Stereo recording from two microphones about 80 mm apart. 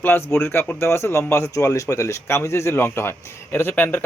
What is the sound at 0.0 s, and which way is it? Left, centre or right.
Speech, left.